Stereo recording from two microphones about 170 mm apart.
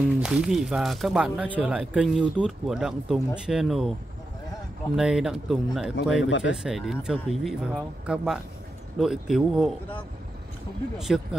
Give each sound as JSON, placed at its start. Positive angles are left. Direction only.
{"t": 0.2, "sound": "speech", "side_deg": -5}
{"t": 4.9, "sound": "speech", "side_deg": -5}
{"t": 6.1, "sound": "speech", "side_deg": 90}
{"t": 6.5, "sound": "speech", "side_deg": -5}
{"t": 11.1, "sound": "speech", "side_deg": 0}